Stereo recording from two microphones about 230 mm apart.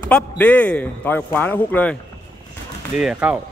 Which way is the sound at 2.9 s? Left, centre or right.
Centre.